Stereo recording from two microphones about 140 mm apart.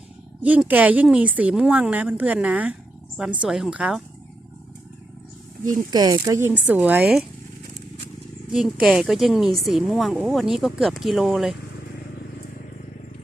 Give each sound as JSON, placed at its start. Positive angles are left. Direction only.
{"t": 0.4, "sound": "speech", "side_deg": -10}
{"t": 5.9, "sound": "speech", "side_deg": -25}
{"t": 8.5, "sound": "speech", "side_deg": 0}